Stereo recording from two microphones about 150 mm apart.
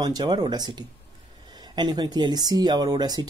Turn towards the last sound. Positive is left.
turn(degrees=-30)  # may be behind; listen again after turning